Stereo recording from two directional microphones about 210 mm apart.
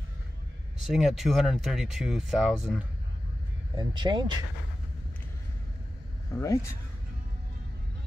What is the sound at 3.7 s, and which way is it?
Speech, 20° right (ahead or behind).